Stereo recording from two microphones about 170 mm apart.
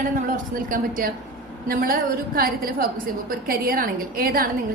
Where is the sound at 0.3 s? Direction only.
55° right (ahead or behind).